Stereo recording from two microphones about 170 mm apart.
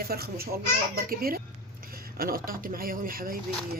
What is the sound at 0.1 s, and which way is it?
Speech, 65° right (ahead or behind).